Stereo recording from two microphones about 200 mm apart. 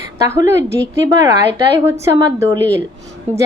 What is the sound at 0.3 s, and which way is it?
A woman's voice, 15° right (ahead or behind).